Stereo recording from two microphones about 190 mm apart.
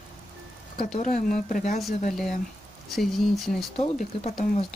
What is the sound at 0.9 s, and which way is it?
Speech, 40° left (ahead or behind).